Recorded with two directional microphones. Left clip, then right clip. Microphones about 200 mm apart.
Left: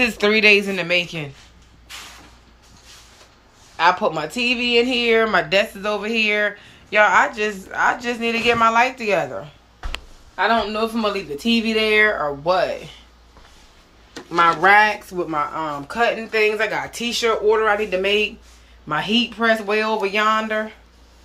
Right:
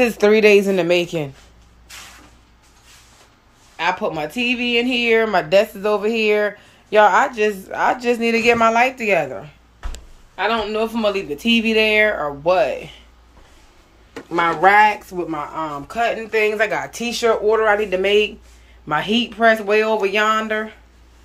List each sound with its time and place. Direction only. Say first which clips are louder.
0.2 s a woman's voice: right 2 dB; 30° right (ahead or behind)
3.7 s speech: left 3 dB; 5° right (ahead or behind)
10.3 s speech: left 1 dB; centre (ahead or behind)
14.3 s speech: even; 10° right (ahead or behind)